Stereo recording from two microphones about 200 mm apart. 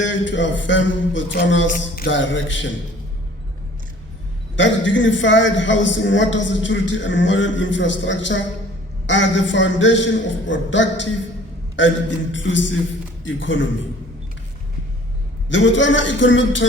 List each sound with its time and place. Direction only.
0.0 s a sound: 65° left (ahead or behind)
2.0 s a man's voice: 65° left (ahead or behind)
4.5 s a man's voice: 70° left (ahead or behind)
15.4 s a man's voice: 65° left (ahead or behind)